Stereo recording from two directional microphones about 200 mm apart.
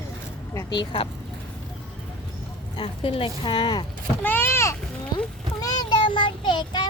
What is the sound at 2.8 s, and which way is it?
Speech, 25° left (ahead or behind).